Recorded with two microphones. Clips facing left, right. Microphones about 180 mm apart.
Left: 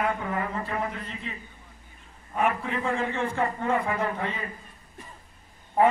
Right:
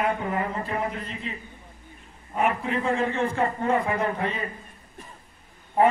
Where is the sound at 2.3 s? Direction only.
25° right (ahead or behind).